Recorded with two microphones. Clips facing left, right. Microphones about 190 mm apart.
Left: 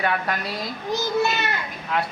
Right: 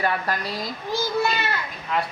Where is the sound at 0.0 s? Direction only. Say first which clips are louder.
Even; centre (ahead or behind).